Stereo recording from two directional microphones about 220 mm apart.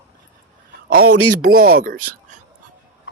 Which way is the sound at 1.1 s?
90° right.